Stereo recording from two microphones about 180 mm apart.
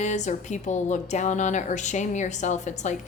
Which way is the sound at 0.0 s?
40° left (ahead or behind).